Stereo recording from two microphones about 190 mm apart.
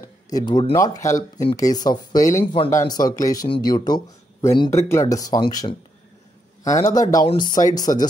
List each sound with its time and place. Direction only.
0.0 s speech: 20° left (ahead or behind)
2.4 s speech: 30° left (ahead or behind)
7.0 s speech: 20° left (ahead or behind)